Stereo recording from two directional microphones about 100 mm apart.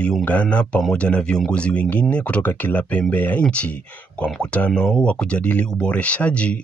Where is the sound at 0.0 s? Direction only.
15° left (ahead or behind).